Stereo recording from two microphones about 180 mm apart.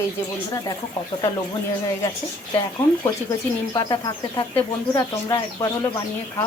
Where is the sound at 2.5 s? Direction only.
20° left (ahead or behind).